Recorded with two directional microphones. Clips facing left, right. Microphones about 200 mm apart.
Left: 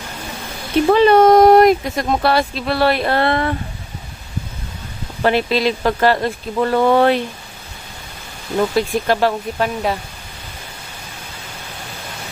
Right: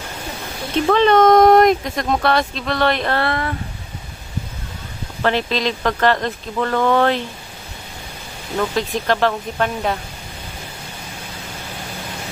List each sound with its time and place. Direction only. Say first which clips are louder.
0.8 s speech: left 2 dB; 10° left (ahead or behind)
3.2 s speech: left 4 dB; 25° left (ahead or behind)
5.2 s speech: left 3 dB; 10° left (ahead or behind)
8.5 s speech: left 4 dB; 10° left (ahead or behind)